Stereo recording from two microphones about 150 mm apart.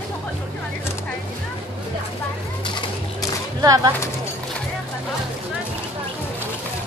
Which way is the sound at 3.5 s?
25° right (ahead or behind).